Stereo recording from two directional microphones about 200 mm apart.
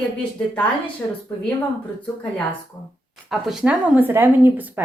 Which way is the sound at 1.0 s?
20° left (ahead or behind).